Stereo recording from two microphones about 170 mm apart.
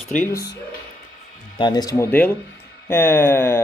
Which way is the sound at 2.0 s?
10° left (ahead or behind).